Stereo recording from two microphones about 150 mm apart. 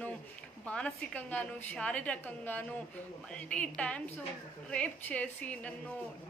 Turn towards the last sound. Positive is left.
turn(degrees=10)  # may be behind; listen again after turning